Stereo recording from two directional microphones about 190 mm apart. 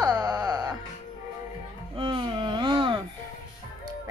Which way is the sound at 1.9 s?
25° right (ahead or behind).